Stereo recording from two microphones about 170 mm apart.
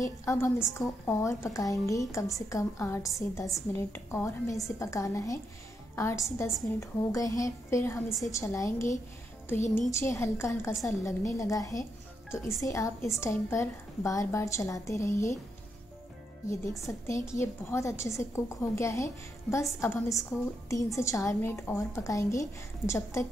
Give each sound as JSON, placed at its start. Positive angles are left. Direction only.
{"t": 0.0, "sound": "a woman's voice", "side_deg": 15}
{"t": 16.8, "sound": "a woman's voice", "side_deg": 15}